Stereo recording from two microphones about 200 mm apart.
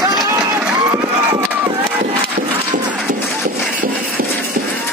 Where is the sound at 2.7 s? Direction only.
40° right (ahead or behind).